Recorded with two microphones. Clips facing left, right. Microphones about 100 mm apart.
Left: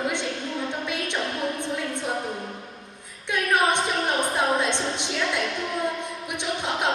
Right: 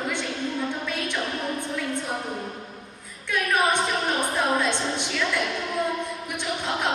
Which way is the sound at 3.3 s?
20° left (ahead or behind).